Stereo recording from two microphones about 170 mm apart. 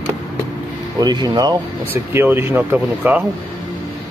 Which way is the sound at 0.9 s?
25° right (ahead or behind).